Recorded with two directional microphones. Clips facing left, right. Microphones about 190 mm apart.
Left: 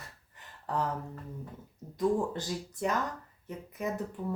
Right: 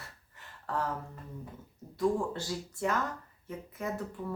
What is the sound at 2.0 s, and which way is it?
Speech, 20° left (ahead or behind).